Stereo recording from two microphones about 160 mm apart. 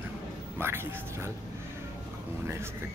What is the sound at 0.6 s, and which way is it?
Speech, 15° right (ahead or behind).